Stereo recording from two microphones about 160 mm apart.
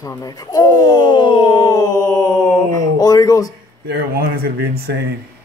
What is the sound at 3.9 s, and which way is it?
Speech, 75° right (ahead or behind).